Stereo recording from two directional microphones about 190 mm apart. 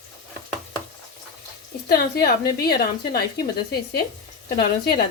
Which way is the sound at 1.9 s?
55° left (ahead or behind).